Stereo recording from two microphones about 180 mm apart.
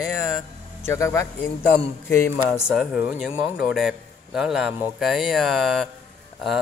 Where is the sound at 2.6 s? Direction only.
5° right (ahead or behind).